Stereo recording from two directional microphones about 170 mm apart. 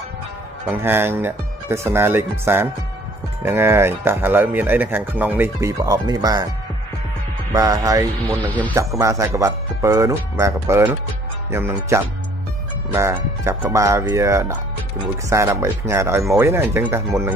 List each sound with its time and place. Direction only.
0.7 s speech: 10° right (ahead or behind)
7.5 s speech: 20° right (ahead or behind)
8.5 s speech: 10° left (ahead or behind)
8.7 s speech: 15° right (ahead or behind)